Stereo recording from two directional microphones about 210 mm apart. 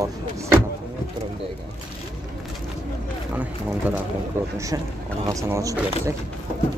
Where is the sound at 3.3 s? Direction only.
10° right (ahead or behind).